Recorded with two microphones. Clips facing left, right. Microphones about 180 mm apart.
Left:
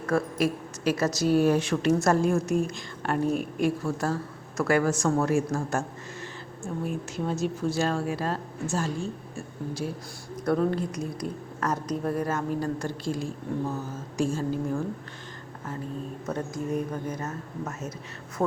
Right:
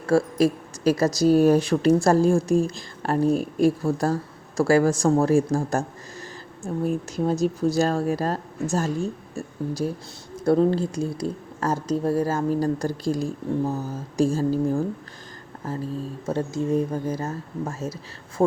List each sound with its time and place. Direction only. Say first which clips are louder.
0.0 s speech: right 6 dB; 30° right (ahead or behind)